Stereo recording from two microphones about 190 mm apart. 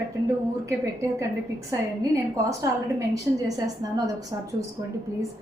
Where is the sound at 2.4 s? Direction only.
15° right (ahead or behind).